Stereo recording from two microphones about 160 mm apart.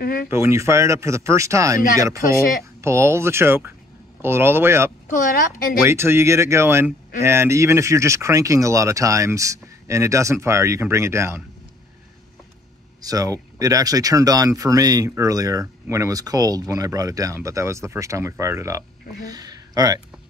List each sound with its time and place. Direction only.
0.0 s speech: 65° left (ahead or behind)
0.3 s speech: 15° right (ahead or behind)
5.0 s speech: 60° left (ahead or behind)
5.9 s speech: 15° right (ahead or behind)
13.0 s speech: 20° right (ahead or behind)